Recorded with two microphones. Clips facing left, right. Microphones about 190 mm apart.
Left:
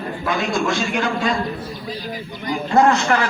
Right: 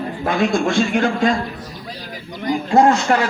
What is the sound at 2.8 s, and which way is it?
Speech, 35° right (ahead or behind).